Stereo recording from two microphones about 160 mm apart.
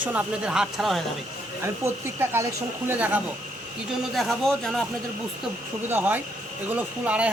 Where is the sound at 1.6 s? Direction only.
15° right (ahead or behind).